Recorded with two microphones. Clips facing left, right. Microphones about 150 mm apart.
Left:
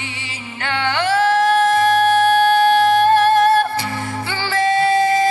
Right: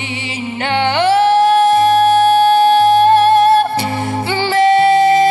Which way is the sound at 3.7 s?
25° right (ahead or behind).